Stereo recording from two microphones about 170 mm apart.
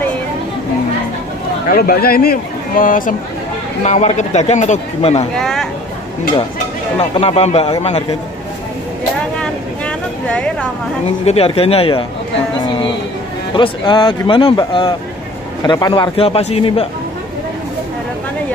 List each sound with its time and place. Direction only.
1.7 s speech: 60° left (ahead or behind)
3.8 s a man's voice: 40° left (ahead or behind)
5.3 s speech: 5° left (ahead or behind)
7.0 s speech: 35° left (ahead or behind)
9.4 s vehicle: 5° left (ahead or behind)
11.2 s speech: 35° left (ahead or behind)
13.6 s a man's voice: 30° left (ahead or behind)